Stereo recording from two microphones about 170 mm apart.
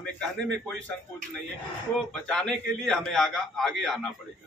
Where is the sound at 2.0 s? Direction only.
Centre (ahead or behind).